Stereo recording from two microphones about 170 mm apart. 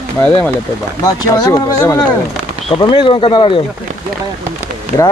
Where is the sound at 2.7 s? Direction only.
30° left (ahead or behind).